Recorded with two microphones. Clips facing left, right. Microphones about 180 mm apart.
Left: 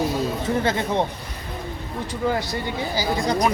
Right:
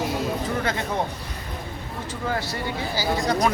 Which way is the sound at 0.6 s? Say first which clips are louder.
Left 4 dB; 30° left (ahead or behind).